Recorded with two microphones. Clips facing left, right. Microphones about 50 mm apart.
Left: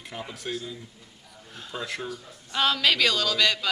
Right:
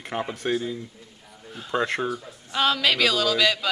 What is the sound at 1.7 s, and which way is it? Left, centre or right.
Speech, right.